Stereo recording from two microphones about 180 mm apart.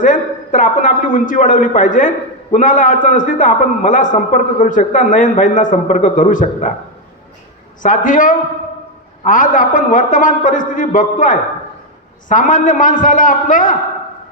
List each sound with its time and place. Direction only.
0.0 s a man's voice: 45° left (ahead or behind)
7.8 s a man's voice: 45° left (ahead or behind)